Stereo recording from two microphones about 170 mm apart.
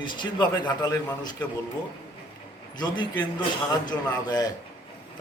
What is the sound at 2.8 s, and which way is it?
A man's voice, 25° left (ahead or behind).